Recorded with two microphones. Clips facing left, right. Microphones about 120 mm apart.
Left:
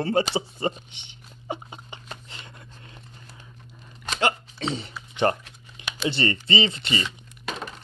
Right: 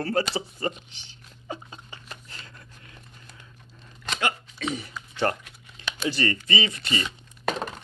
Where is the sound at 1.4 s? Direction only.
20° left (ahead or behind).